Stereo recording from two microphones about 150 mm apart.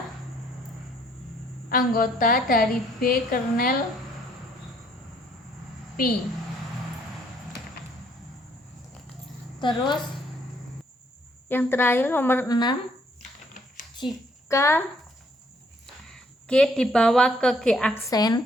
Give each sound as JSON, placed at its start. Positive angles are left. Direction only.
{"t": 1.7, "sound": "a woman's voice", "side_deg": 65}
{"t": 9.6, "sound": "a woman's voice", "side_deg": 30}
{"t": 11.4, "sound": "a woman's voice", "side_deg": 15}
{"t": 12.5, "sound": "speech", "side_deg": 30}
{"t": 14.0, "sound": "a child's voice", "side_deg": 30}
{"t": 14.4, "sound": "speech", "side_deg": 20}
{"t": 16.0, "sound": "a woman's voice", "side_deg": 5}
{"t": 18.1, "sound": "speech", "side_deg": 25}